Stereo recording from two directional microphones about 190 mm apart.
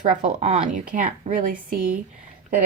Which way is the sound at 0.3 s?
35° right (ahead or behind).